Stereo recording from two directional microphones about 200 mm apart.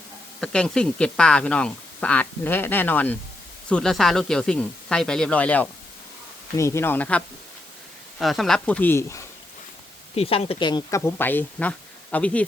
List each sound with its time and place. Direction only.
0.3 s speech: 5° left (ahead or behind)
10.2 s speech: 30° left (ahead or behind); by 12.5 s 5° left (ahead or behind)